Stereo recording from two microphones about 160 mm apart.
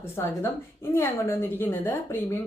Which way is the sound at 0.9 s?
15° left (ahead or behind).